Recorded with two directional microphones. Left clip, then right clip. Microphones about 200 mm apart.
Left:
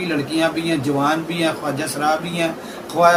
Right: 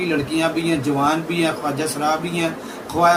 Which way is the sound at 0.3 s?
15° left (ahead or behind).